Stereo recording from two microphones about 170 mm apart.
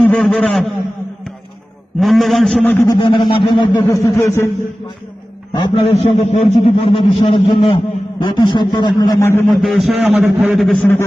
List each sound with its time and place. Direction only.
0.1 s a man's voice: 5° left (ahead or behind)
2.0 s a man's voice: centre (ahead or behind)
2.7 s a sound: 15° left (ahead or behind)
3.0 s a man's voice: 30° left (ahead or behind)
3.8 s a sound: 15° left (ahead or behind)
5.5 s a man's voice: 35° left (ahead or behind); by 9.4 s 15° left (ahead or behind)
9.6 s a man's voice: centre (ahead or behind)